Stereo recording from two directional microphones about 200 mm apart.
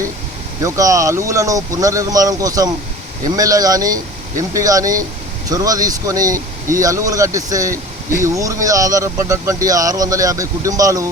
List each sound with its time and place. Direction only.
0.6 s speech: 15° right (ahead or behind)